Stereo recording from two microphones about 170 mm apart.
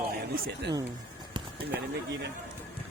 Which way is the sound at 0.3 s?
65° right (ahead or behind).